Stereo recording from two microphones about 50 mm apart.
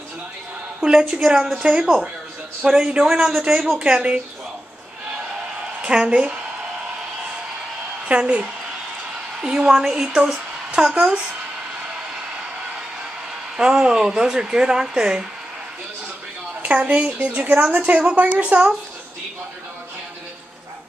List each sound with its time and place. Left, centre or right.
0.7 s a woman's voice: centre
5.9 s a woman's voice: centre
8.1 s a woman's voice: right
10.9 s a woman's voice: right
13.6 s speech: centre
16.6 s a woman's voice: right